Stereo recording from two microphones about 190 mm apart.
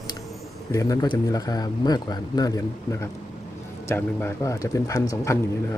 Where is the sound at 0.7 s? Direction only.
20° left (ahead or behind).